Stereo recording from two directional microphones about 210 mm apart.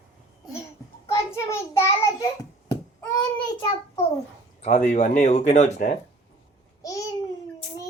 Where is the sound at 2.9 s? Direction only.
15° left (ahead or behind).